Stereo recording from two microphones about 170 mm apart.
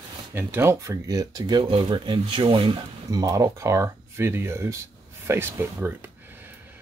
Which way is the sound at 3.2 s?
20° right (ahead or behind).